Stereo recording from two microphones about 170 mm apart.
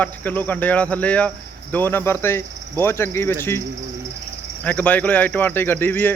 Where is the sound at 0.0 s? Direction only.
10° left (ahead or behind).